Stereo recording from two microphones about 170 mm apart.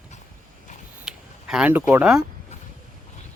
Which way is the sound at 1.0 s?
5° right (ahead or behind).